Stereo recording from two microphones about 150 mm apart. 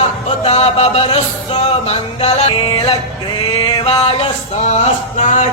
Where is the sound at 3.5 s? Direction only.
35° left (ahead or behind).